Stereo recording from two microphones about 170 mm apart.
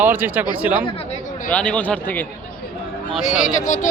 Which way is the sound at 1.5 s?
10° left (ahead or behind).